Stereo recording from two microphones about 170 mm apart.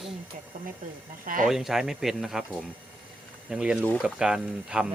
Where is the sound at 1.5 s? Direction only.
Centre (ahead or behind).